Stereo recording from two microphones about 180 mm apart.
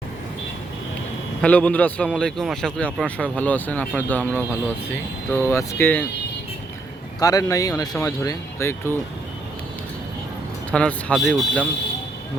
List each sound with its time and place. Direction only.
1.4 s speech: 5° left (ahead or behind)
7.2 s speech: 20° left (ahead or behind)
10.7 s speech: 5° left (ahead or behind)